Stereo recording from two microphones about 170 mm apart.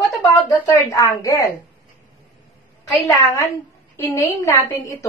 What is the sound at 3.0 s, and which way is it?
A woman's voice, 20° left (ahead or behind).